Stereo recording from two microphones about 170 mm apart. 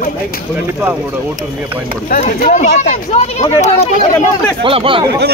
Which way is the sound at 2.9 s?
40° left (ahead or behind).